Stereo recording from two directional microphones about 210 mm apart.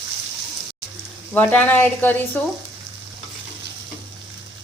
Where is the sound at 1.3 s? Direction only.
10° left (ahead or behind).